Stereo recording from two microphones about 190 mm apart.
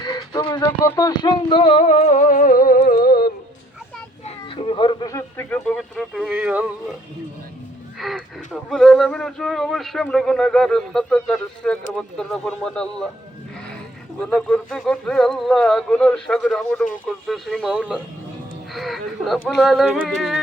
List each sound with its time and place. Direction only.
0.0 s speech: 20° left (ahead or behind); by 3.3 s 55° left (ahead or behind)
4.4 s speech: 30° left (ahead or behind); by 6.7 s 5° right (ahead or behind)
7.9 s speech: centre (ahead or behind)
14.2 s speech: 5° left (ahead or behind)